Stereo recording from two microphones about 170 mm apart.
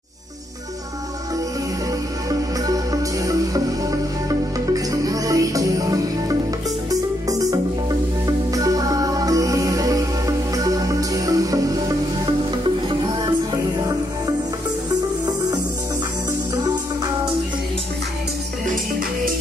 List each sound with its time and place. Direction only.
2.2 s music: 20° right (ahead or behind)
12.8 s music: 30° right (ahead or behind)